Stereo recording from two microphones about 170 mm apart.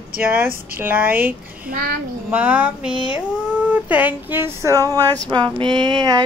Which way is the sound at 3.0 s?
5° right (ahead or behind).